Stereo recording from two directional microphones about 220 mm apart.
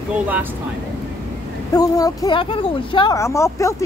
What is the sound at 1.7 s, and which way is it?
Speech, 15° left (ahead or behind).